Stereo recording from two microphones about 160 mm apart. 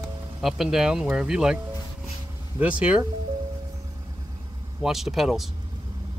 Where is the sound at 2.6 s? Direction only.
10° right (ahead or behind).